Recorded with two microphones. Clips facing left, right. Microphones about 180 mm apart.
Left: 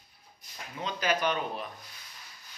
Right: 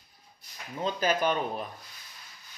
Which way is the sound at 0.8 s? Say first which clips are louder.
Right 3 dB; 40° right (ahead or behind).